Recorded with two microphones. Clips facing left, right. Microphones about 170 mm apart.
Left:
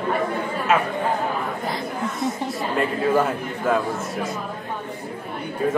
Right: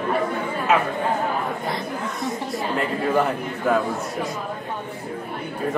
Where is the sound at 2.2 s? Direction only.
Centre (ahead or behind).